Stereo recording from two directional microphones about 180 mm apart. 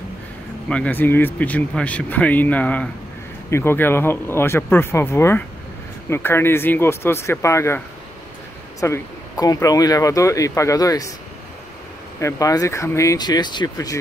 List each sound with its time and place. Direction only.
0.7 s speech: 5° left (ahead or behind)
8.8 s speech: 20° left (ahead or behind)
12.2 s speech: 15° left (ahead or behind)